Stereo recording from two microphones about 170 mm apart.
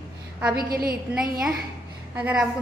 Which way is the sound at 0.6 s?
60° right (ahead or behind).